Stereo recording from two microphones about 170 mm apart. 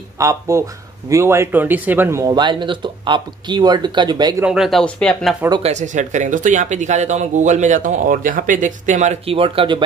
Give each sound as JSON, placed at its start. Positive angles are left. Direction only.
{"t": 0.2, "sound": "a man's voice", "side_deg": -20}
{"t": 4.4, "sound": "speech", "side_deg": -5}
{"t": 5.6, "sound": "speech", "side_deg": -45}